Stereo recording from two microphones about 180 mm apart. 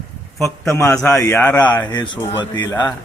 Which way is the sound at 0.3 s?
Centre (ahead or behind).